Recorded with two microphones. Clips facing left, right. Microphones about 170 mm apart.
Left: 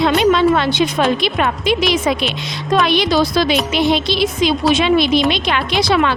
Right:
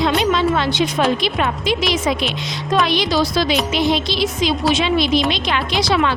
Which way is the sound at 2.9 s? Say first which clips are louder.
Left 3 dB; 60° left (ahead or behind).